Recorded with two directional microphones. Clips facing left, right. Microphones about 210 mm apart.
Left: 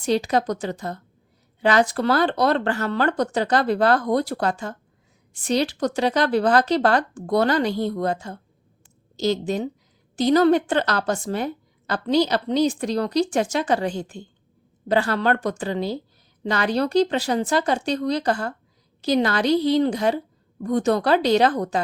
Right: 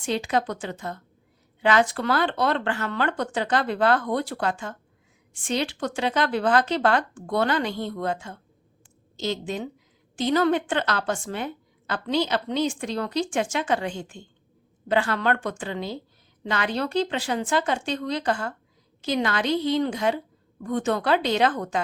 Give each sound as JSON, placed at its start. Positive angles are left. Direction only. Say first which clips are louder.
{"t": 0.0, "sound": "a woman's voice", "louder": "left 4 dB", "side_deg": 40}